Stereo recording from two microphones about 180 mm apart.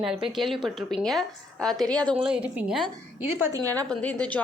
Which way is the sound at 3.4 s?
20° right (ahead or behind).